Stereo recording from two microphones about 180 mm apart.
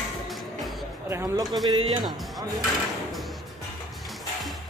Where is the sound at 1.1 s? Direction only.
15° right (ahead or behind).